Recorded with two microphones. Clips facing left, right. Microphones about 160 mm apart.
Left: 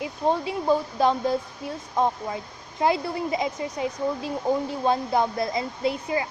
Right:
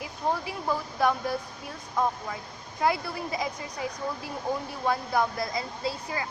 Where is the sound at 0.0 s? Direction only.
25° left (ahead or behind).